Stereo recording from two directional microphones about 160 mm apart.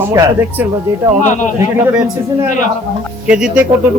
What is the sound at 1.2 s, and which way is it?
Speech, 50° left (ahead or behind).